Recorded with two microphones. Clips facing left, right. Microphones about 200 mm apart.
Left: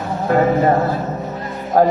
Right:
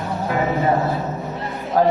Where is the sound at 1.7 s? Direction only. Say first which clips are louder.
Left 3 dB; 45° left (ahead or behind).